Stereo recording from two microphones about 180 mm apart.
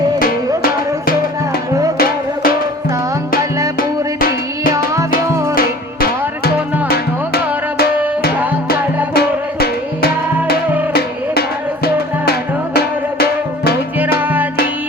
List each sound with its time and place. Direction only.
0.2 s music: 55° left (ahead or behind)
3.8 s music: 55° left (ahead or behind)
12.2 s music: 60° left (ahead or behind)